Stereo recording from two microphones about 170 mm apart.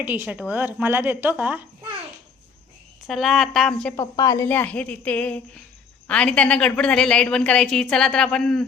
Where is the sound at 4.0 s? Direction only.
20° left (ahead or behind).